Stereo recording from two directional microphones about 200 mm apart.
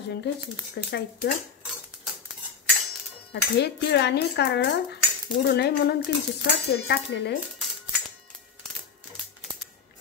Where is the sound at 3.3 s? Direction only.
55° left (ahead or behind).